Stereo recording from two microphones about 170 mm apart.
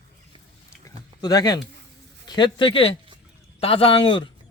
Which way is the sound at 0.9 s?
20° left (ahead or behind).